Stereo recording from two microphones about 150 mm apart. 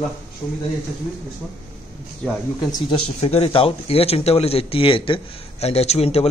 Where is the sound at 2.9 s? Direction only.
40° left (ahead or behind).